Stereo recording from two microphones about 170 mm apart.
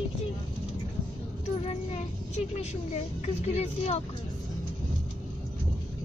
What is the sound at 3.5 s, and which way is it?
Speech, 40° left (ahead or behind).